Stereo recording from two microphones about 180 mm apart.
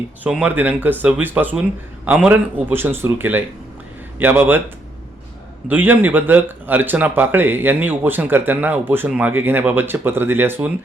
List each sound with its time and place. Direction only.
0.3 s speech: 5° right (ahead or behind)
5.6 s speech: 10° right (ahead or behind)